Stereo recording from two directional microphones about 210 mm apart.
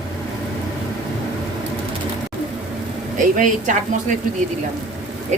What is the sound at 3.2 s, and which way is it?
Speech, 40° right (ahead or behind).